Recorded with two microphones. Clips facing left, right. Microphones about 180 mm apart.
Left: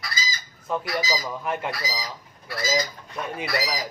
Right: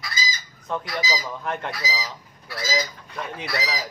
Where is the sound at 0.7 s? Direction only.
5° left (ahead or behind).